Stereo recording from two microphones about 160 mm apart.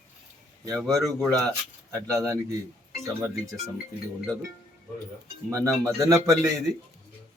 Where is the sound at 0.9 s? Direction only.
Centre (ahead or behind).